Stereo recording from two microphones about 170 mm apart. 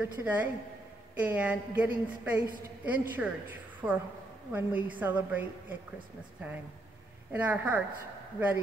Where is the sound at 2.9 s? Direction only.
10° right (ahead or behind).